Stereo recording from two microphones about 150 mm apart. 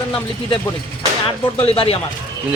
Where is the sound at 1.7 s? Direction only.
40° left (ahead or behind).